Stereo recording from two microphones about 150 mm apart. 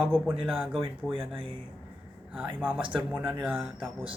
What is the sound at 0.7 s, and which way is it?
Speech, 35° right (ahead or behind).